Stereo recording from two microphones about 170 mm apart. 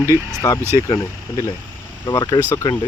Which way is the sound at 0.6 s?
15° right (ahead or behind).